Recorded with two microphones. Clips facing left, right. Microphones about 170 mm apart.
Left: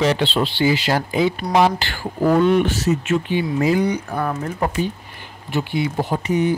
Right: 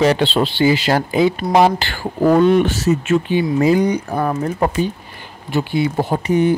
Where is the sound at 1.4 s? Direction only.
25° right (ahead or behind).